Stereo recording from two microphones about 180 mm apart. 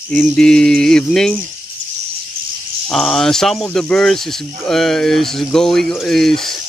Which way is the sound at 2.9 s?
Centre (ahead or behind).